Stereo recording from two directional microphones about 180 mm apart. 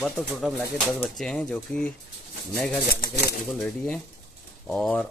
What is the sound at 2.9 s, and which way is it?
Speech, 60° left (ahead or behind).